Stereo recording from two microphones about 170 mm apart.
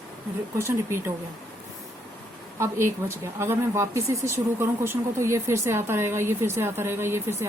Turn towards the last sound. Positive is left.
turn(degrees=-15)  # may be behind; listen again after turning